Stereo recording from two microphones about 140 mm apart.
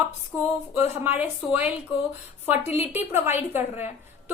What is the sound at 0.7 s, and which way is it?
A woman's voice, 15° right (ahead or behind).